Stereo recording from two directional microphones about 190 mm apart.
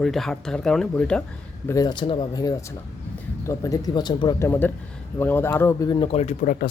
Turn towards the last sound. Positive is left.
turn(degrees=35)  # may be behind; listen again after turning